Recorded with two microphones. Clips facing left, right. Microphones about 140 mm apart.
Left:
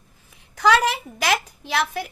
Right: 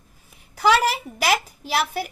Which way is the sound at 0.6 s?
5° right (ahead or behind).